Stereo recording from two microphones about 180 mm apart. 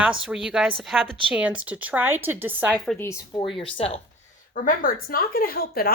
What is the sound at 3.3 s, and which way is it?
Speech, 30° left (ahead or behind).